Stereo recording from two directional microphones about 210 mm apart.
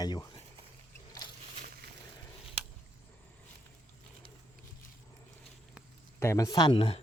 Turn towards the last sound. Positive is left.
turn(degrees=25)  # may be behind; listen again after turning